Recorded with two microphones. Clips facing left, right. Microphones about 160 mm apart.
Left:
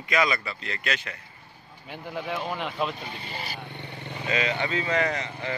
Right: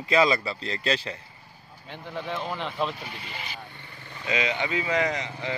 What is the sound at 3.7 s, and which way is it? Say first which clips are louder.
Vehicle: left 7 dB; 75° left (ahead or behind).